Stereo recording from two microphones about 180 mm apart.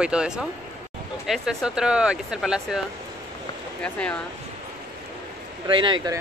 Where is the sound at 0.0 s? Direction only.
5° right (ahead or behind).